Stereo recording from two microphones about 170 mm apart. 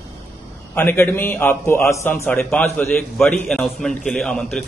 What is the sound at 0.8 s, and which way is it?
A man's voice, 15° left (ahead or behind).